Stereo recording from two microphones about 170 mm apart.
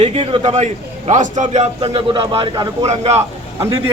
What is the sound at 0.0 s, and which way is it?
A man's voice, 40° right (ahead or behind).